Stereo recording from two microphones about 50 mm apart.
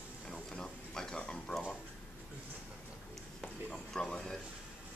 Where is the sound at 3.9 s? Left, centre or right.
Centre.